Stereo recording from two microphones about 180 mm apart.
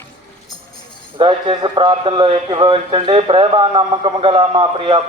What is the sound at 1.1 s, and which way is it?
A man's voice, 30° right (ahead or behind).